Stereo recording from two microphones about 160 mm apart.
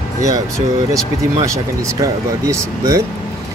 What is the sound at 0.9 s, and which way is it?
Speech, 20° right (ahead or behind).